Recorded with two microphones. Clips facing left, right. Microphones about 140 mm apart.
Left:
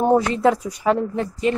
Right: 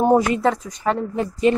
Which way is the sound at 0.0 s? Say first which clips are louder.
Even; 5° right (ahead or behind).